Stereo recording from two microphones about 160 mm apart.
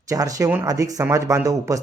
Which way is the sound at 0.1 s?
20° right (ahead or behind).